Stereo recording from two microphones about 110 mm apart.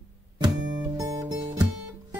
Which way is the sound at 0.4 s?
35° right (ahead or behind).